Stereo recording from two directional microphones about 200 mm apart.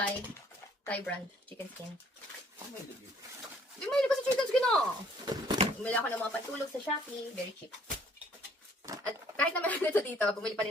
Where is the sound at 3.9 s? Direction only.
Centre (ahead or behind).